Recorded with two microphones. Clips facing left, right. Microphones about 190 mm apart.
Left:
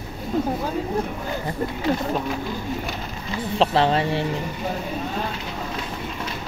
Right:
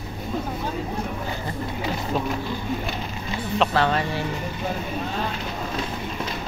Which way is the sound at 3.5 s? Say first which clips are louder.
Left 2 dB; 30° left (ahead or behind).